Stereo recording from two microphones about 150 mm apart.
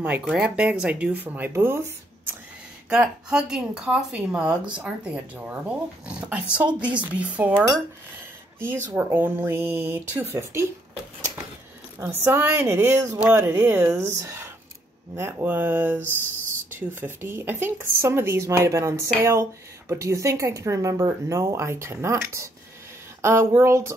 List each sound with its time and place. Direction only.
0.0 s speech: 5° right (ahead or behind)
12.0 s speech: 15° right (ahead or behind)